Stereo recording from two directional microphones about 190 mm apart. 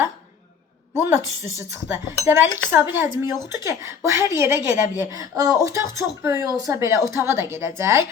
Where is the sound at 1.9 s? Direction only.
15° right (ahead or behind).